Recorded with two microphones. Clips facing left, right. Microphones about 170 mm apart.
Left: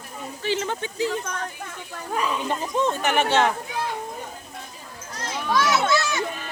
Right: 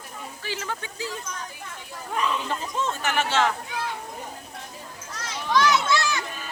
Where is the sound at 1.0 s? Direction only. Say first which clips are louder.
Left 8 dB; 65° left (ahead or behind).